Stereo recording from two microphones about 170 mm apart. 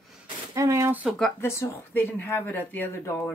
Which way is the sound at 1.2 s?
15° left (ahead or behind).